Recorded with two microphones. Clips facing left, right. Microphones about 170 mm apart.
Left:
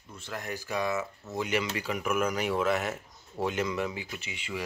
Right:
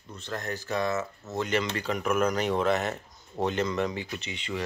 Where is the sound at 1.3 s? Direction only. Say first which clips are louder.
Right 2 dB; 10° left (ahead or behind).